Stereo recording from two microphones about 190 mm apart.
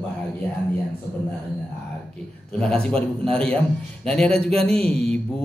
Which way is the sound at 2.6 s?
5° left (ahead or behind).